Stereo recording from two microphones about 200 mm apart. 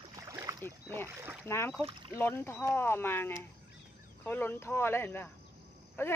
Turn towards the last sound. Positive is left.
turn(degrees=10)  # may be behind; listen again after turning